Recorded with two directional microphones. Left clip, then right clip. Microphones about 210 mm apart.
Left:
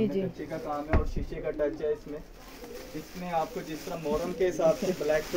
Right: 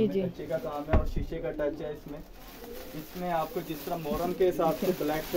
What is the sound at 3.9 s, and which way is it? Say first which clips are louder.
Speech: left 1 dB; 45° right (ahead or behind).